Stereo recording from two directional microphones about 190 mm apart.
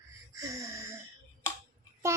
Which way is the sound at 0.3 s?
15° right (ahead or behind).